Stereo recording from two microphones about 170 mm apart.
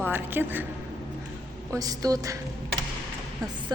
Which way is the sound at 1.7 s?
20° right (ahead or behind).